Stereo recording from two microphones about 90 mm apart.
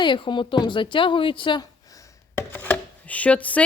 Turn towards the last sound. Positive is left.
turn(degrees=15)  # may be behind; listen again after turning